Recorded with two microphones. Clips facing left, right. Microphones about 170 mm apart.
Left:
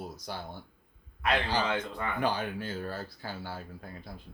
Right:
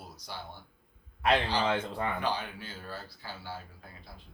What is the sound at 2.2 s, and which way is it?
Speech, 50° left (ahead or behind).